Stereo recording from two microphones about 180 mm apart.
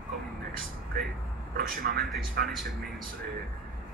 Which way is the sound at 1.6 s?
55° right (ahead or behind).